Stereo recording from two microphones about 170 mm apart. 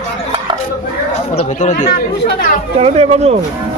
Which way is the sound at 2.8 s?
40° right (ahead or behind).